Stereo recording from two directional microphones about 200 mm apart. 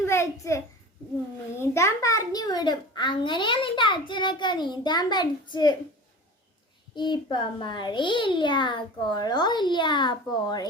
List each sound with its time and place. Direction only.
0.0 s a sound: 15° left (ahead or behind)
1.5 s a child's voice: 15° left (ahead or behind)
6.9 s a child's voice: 20° left (ahead or behind)